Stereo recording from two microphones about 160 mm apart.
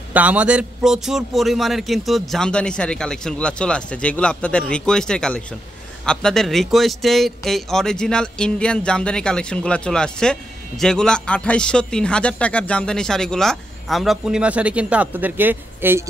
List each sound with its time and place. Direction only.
0.1 s a man's voice: 10° right (ahead or behind)